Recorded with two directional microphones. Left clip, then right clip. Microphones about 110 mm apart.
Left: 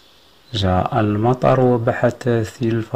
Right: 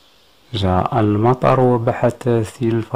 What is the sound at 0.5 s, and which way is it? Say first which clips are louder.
Speech: right 1 dB; 20° right (ahead or behind).